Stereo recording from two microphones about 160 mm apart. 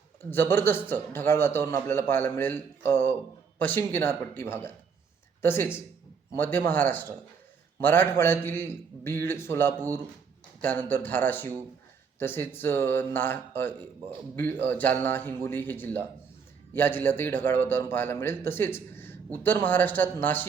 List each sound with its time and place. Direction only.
0.3 s a man's voice: 15° left (ahead or behind)